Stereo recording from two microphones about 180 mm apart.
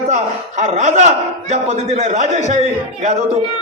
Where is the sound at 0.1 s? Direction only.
40° right (ahead or behind).